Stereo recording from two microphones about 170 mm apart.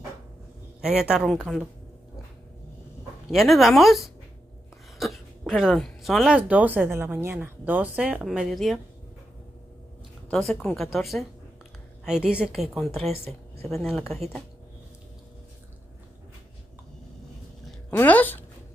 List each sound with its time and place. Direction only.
0.7 s a woman's voice: 5° right (ahead or behind)
3.3 s a woman's voice: centre (ahead or behind)
4.9 s a sound: centre (ahead or behind)
5.5 s speech: centre (ahead or behind)
10.3 s a woman's voice: centre (ahead or behind)
13.0 s speech: 35° right (ahead or behind)
13.7 s a woman's voice: centre (ahead or behind)
17.6 s a sound: 5° left (ahead or behind)